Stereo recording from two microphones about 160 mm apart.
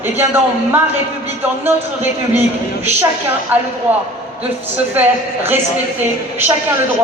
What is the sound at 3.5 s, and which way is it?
Speech, 10° right (ahead or behind).